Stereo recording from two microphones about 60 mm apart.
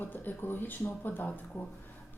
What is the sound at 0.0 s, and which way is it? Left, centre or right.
A woman's voice, left.